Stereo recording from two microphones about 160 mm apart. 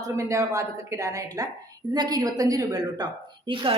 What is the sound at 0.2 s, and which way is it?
A woman's voice, 20° right (ahead or behind).